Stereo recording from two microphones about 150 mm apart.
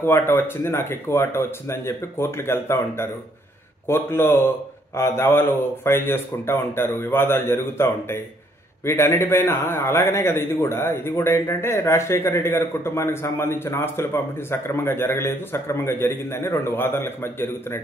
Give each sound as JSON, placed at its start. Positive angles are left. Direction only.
{"t": 0.0, "sound": "a man's voice", "side_deg": 15}